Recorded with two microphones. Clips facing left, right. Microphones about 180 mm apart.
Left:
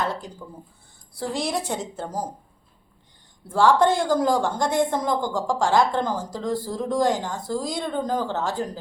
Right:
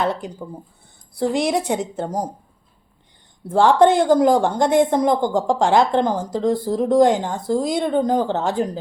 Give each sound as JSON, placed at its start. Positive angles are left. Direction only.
{"t": 0.0, "sound": "a woman's voice", "side_deg": -20}
{"t": 3.5, "sound": "a woman's voice", "side_deg": -20}